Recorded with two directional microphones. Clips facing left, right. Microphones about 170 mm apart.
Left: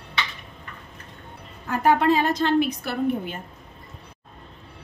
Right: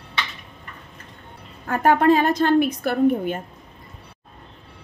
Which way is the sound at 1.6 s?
50° right (ahead or behind).